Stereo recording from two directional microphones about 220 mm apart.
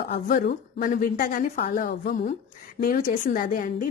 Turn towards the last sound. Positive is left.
turn(degrees=40)  # may be behind; listen again after turning